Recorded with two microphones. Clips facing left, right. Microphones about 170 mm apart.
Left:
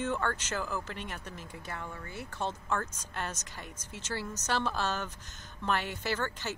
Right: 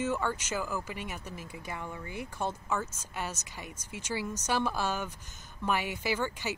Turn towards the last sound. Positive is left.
turn(degrees=-10)  # may be behind; listen again after turning